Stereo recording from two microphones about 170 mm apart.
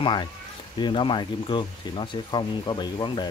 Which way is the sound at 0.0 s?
30° left (ahead or behind).